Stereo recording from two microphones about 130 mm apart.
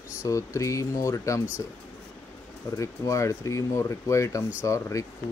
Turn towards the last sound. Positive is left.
turn(degrees=25)  # may be behind; listen again after turning